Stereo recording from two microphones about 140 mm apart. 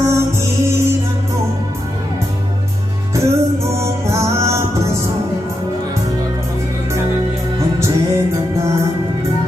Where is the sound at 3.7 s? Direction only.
20° right (ahead or behind).